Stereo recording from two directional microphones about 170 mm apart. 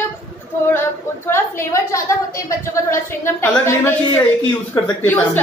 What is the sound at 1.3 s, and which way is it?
A woman's voice, 15° left (ahead or behind).